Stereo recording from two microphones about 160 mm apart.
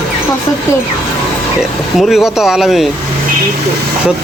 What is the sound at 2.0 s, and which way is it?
Speech, centre (ahead or behind).